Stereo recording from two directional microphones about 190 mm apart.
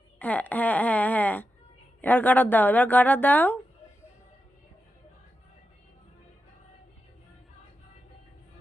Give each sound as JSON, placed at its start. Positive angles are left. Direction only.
{"t": 0.2, "sound": "speech", "side_deg": 10}